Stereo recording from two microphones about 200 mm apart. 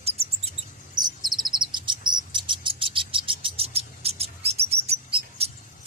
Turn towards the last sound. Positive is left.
turn(degrees=-30)  # may be behind; listen again after turning